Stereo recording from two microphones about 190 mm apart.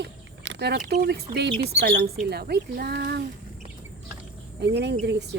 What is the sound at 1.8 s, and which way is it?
Speech, 55° right (ahead or behind).